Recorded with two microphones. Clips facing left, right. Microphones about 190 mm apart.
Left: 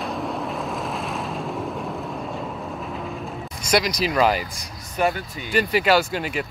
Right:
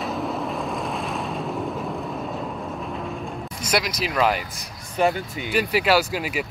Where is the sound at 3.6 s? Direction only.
5° right (ahead or behind).